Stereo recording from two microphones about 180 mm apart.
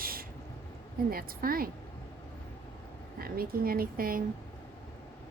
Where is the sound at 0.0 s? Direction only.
55° right (ahead or behind).